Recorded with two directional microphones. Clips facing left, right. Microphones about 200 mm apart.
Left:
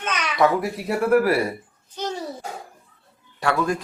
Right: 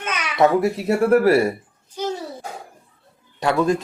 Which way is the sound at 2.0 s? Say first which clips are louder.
Right 4 dB; 10° right (ahead or behind).